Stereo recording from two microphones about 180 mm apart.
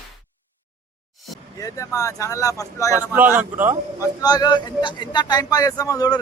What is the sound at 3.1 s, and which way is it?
Speech, 10° right (ahead or behind).